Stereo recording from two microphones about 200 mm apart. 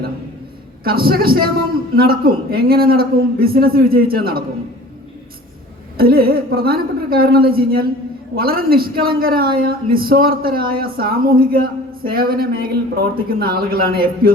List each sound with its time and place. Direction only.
0.9 s a man's voice: 50° right (ahead or behind)
6.0 s a man's voice: 50° right (ahead or behind)